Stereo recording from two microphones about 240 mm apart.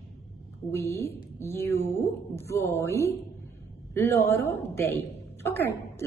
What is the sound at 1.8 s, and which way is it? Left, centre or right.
Speech, right.